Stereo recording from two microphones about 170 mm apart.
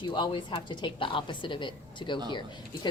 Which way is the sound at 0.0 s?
25° left (ahead or behind).